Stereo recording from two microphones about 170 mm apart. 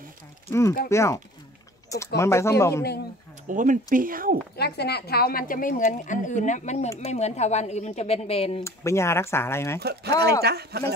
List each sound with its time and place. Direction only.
0.5 s speech: 15° left (ahead or behind)
3.4 s speech: 50° right (ahead or behind)
4.6 s a woman's voice: 70° left (ahead or behind); by 8.6 s 35° left (ahead or behind)
8.6 s speech: 15° left (ahead or behind)
9.8 s speech: 70° right (ahead or behind)